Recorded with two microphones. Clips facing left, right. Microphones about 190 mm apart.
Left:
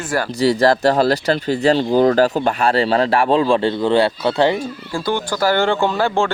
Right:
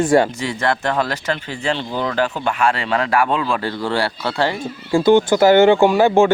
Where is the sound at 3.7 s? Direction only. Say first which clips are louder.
Left 6 dB; 20° left (ahead or behind).